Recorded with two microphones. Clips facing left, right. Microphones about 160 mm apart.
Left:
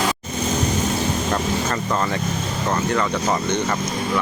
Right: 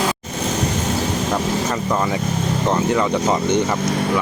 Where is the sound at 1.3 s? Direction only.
10° right (ahead or behind).